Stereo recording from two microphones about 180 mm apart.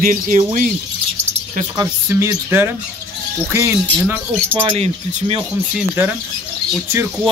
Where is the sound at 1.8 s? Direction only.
15° right (ahead or behind).